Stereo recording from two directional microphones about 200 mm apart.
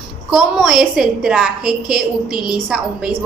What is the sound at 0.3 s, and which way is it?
A woman's voice, centre (ahead or behind).